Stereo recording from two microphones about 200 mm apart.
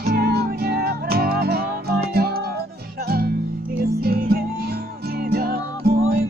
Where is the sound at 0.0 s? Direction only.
50° right (ahead or behind).